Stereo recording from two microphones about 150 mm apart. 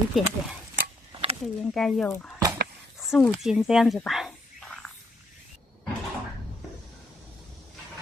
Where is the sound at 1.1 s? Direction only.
40° right (ahead or behind).